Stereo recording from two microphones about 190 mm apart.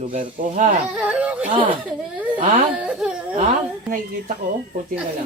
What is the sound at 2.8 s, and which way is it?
Whimper, 5° right (ahead or behind).